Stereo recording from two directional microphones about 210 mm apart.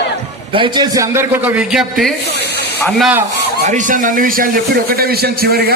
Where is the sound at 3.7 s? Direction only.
35° right (ahead or behind).